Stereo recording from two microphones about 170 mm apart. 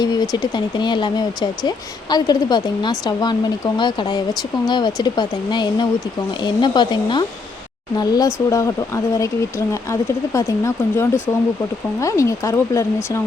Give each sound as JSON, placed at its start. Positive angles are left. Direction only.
{"t": 0.0, "sound": "a woman's voice", "side_deg": 25}